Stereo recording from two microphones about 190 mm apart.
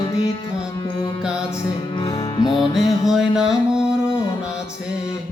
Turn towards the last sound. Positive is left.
turn(degrees=-5)  # may be behind; listen again after turning